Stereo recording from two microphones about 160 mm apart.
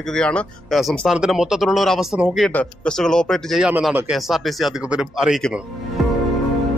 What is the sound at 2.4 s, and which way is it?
Speech, 5° left (ahead or behind).